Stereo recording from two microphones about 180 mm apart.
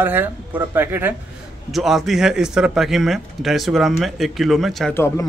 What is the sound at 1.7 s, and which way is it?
Speech, centre (ahead or behind).